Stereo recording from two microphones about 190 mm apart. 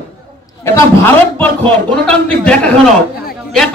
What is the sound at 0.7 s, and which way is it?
A man's voice, 10° left (ahead or behind).